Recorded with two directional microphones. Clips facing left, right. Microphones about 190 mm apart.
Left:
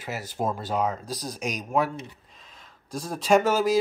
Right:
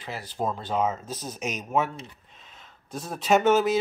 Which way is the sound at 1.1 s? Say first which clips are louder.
Left 2 dB; 35° left (ahead or behind).